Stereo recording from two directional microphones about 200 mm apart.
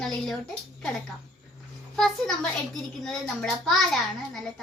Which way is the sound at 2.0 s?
5° left (ahead or behind).